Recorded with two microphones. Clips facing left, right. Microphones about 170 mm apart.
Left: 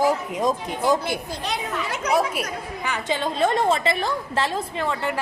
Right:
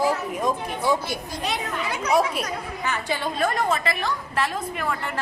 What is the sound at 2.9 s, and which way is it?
A woman's voice, 20° left (ahead or behind).